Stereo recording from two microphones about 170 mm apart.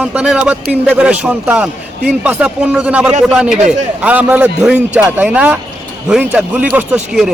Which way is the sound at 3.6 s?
45° right (ahead or behind).